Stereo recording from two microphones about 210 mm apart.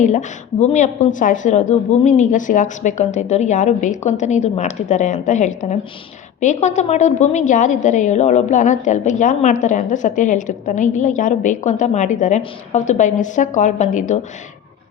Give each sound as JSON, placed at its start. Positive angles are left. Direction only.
{"t": 0.0, "sound": "a woman's voice", "side_deg": 35}